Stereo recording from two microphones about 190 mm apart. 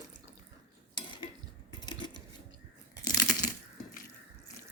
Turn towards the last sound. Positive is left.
turn(degrees=20)  # may be behind; listen again after turning